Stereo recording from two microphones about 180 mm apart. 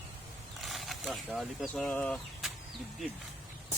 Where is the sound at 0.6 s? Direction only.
Centre (ahead or behind).